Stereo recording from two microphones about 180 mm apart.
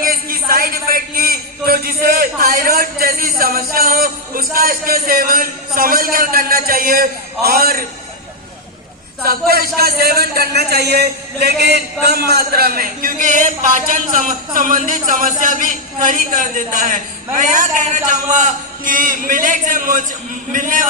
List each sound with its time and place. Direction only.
0.0 s a man's voice: 55° right (ahead or behind)
9.2 s a man's voice: 55° right (ahead or behind)